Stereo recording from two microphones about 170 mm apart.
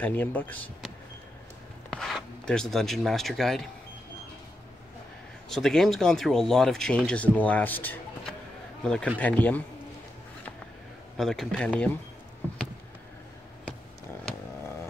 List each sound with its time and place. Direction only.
0.0 s speech: 10° left (ahead or behind)
5.5 s speech: 5° left (ahead or behind)
11.1 s speech: 5° left (ahead or behind)